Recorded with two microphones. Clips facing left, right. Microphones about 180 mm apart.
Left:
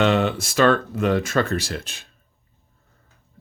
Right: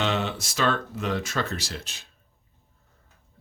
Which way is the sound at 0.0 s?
55° left (ahead or behind).